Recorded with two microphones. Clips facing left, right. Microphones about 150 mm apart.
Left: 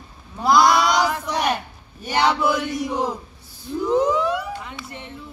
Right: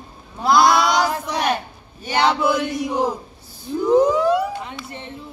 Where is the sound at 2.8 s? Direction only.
10° right (ahead or behind).